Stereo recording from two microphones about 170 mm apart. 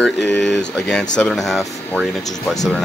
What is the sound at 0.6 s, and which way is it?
Speech, 5° left (ahead or behind).